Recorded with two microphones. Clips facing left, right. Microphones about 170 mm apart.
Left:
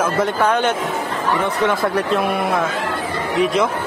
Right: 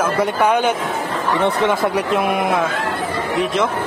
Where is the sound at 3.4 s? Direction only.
Centre (ahead or behind).